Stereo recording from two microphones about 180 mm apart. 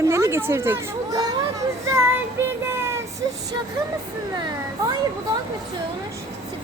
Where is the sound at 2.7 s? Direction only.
15° right (ahead or behind).